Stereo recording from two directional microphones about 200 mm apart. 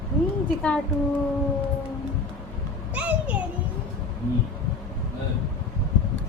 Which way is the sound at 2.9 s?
5° right (ahead or behind).